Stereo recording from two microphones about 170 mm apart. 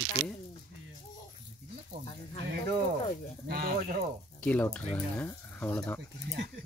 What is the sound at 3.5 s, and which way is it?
Speech, 60° right (ahead or behind).